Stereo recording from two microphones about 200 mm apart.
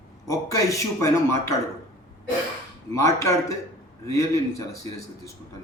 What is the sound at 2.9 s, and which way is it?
A man's voice, 15° left (ahead or behind).